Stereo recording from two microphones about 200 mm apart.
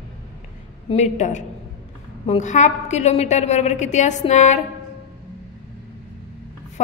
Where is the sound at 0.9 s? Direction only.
35° left (ahead or behind).